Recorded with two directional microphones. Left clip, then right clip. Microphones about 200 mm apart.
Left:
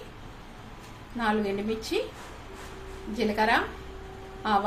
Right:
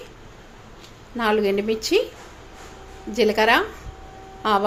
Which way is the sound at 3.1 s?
45° right (ahead or behind).